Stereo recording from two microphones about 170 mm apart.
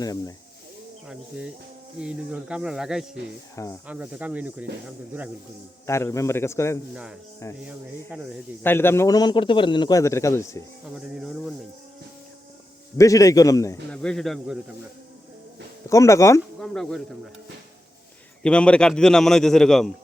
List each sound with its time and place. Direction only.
0.0 s a man's voice: 20° left (ahead or behind)
1.0 s a man's voice: 5° right (ahead or behind)
3.5 s a man's voice: 20° left (ahead or behind)
3.8 s speech: 10° right (ahead or behind)
5.8 s a man's voice: 15° left (ahead or behind)
6.9 s a man's voice: 5° right (ahead or behind)
8.6 s a man's voice: 15° left (ahead or behind)
10.9 s a man's voice: 5° right (ahead or behind)
13.0 s a man's voice: 20° left (ahead or behind)
13.9 s a man's voice: 5° left (ahead or behind)
15.9 s a man's voice: 20° left (ahead or behind)
16.6 s speech: centre (ahead or behind)
18.4 s a man's voice: 5° left (ahead or behind)